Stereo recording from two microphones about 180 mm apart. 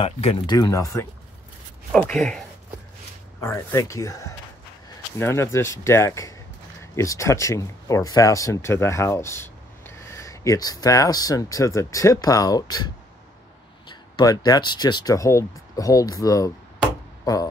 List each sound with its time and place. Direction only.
0.0 s speech: 30° left (ahead or behind)
0.6 s speech: 20° left (ahead or behind)
1.9 s speech: 5° left (ahead or behind)
3.3 s speech: 15° left (ahead or behind)
17.2 s a sound: 20° left (ahead or behind)